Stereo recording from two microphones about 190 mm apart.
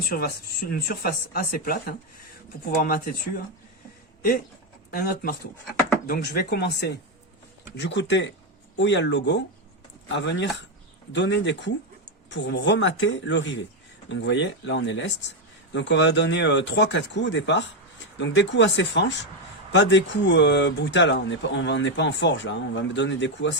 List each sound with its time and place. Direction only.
0.7 s speech: 50° left (ahead or behind)
4.9 s speech: 50° left (ahead or behind); by 23.6 s 70° left (ahead or behind)